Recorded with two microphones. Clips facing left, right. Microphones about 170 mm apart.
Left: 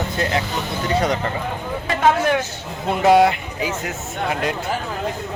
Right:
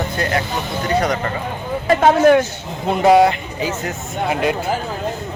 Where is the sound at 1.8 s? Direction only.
35° right (ahead or behind).